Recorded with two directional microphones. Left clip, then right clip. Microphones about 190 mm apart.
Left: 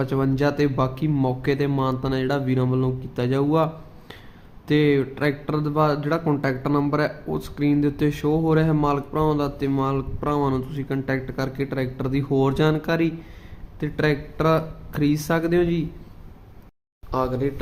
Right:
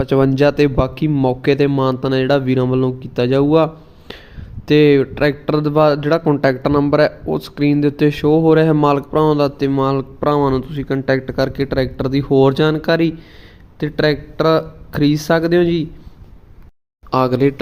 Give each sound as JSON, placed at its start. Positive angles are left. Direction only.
{"t": 0.0, "sound": "speech", "side_deg": -35}
{"t": 17.1, "sound": "speech", "side_deg": -40}